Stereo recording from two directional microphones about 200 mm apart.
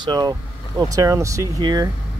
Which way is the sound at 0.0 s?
20° right (ahead or behind).